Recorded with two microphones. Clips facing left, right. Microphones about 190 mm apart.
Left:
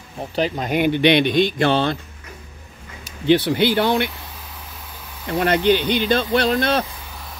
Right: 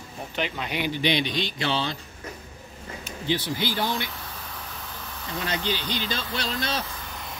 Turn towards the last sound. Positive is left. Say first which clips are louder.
# even
turn(degrees=5)  # may be behind; listen again after turning